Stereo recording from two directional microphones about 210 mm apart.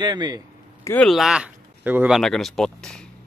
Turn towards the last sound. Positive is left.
turn(degrees=5)  # may be behind; listen again after turning